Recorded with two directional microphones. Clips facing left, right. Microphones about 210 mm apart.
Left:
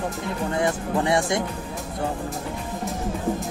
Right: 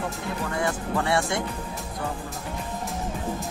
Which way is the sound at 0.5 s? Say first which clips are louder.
Left 4 dB; 20° left (ahead or behind).